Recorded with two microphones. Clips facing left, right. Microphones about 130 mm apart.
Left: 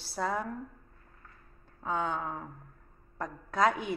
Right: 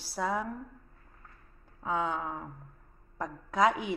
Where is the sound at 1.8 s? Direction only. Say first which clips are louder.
Right 1 dB; 10° right (ahead or behind).